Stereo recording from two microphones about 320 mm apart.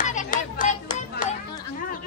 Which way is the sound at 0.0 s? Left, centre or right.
Left.